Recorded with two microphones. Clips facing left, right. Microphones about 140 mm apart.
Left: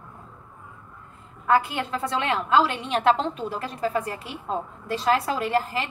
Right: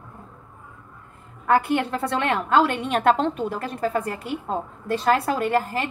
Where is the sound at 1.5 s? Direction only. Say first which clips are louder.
Right 2 dB; 60° right (ahead or behind).